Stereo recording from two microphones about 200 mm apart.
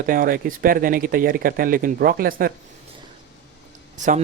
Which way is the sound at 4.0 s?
35° right (ahead or behind).